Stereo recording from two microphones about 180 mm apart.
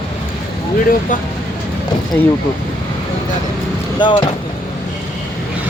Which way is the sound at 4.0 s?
25° left (ahead or behind).